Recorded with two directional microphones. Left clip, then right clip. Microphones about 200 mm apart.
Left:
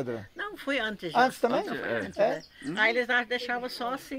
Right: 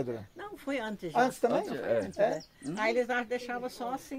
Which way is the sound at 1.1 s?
35° left (ahead or behind).